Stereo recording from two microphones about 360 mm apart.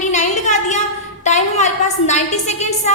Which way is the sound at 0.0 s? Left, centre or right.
Centre.